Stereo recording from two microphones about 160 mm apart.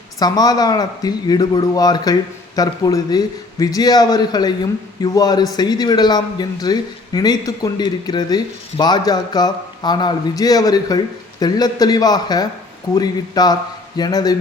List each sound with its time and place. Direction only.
0.2 s a man's voice: 25° left (ahead or behind)